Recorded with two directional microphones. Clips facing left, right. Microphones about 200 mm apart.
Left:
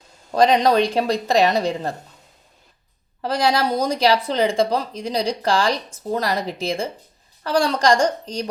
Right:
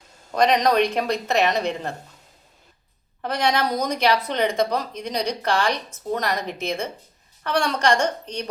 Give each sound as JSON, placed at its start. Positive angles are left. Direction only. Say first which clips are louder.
{"t": 0.3, "sound": "speech", "louder": "left 3 dB", "side_deg": 30}
{"t": 3.2, "sound": "speech", "louder": "left 3 dB", "side_deg": 30}